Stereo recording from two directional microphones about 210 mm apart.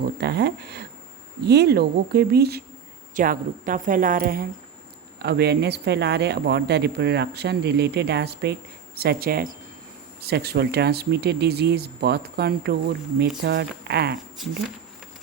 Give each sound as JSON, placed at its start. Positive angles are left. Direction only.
{"t": 0.0, "sound": "a woman's voice", "side_deg": -50}